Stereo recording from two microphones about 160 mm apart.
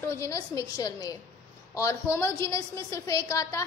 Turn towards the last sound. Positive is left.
turn(degrees=20)  # may be behind; listen again after turning